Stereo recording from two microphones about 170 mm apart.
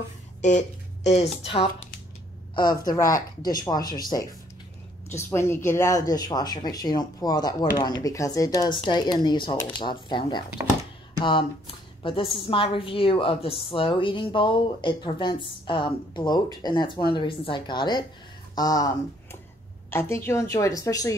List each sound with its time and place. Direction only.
0.4 s a sound: 45° left (ahead or behind)
1.4 s speech: 30° left (ahead or behind)
2.8 s a woman's voice: 20° left (ahead or behind)